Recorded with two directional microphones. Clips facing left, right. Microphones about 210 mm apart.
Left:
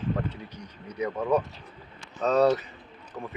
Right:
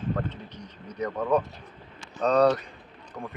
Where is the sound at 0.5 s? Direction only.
10° left (ahead or behind).